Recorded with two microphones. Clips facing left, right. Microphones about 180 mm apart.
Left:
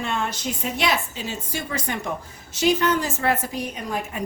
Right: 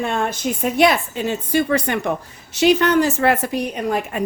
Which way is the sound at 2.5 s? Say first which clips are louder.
Right 6 dB; 70° right (ahead or behind).